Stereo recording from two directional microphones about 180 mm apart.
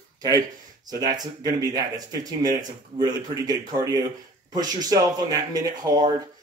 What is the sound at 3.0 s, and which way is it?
Speech, 25° right (ahead or behind).